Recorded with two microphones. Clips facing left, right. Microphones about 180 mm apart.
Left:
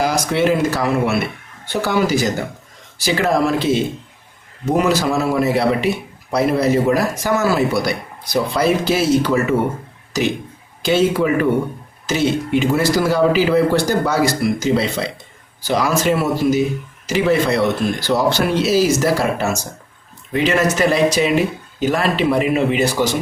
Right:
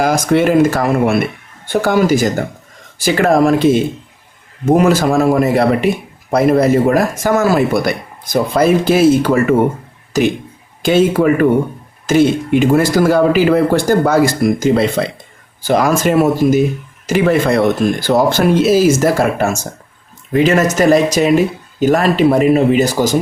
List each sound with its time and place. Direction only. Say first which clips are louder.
0.0 s speech: right 5 dB; 50° right (ahead or behind)